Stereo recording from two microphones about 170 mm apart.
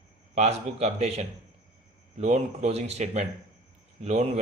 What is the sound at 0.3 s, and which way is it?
A man's voice, 40° right (ahead or behind).